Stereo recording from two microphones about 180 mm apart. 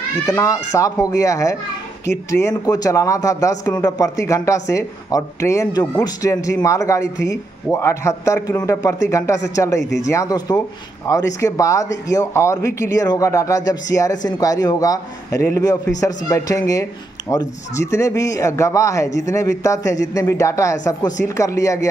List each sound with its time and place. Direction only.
0.3 s a woman's voice: 15° left (ahead or behind)